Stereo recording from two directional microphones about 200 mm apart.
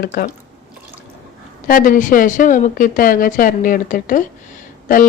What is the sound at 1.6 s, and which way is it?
Speech, 45° left (ahead or behind).